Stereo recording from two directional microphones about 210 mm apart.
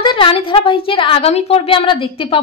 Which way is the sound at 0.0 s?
25° left (ahead or behind).